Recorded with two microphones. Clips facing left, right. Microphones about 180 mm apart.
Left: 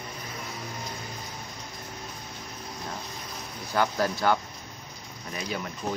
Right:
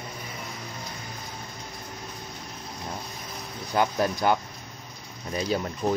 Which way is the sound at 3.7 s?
20° right (ahead or behind).